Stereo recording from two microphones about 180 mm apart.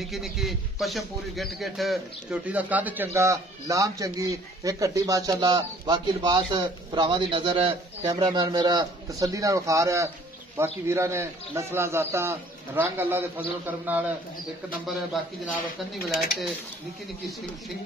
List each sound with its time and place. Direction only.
0.0 s a man's voice: centre (ahead or behind)
15.9 s a man's voice: centre (ahead or behind)